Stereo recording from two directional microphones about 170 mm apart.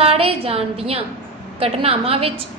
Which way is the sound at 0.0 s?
35° right (ahead or behind).